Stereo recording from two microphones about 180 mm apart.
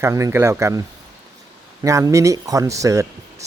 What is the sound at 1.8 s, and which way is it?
Speech, 15° right (ahead or behind).